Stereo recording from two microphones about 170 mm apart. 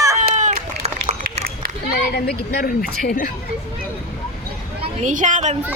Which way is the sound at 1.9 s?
75° left (ahead or behind).